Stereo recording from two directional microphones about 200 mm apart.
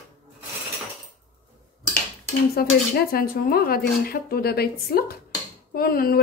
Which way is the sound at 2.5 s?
50° left (ahead or behind).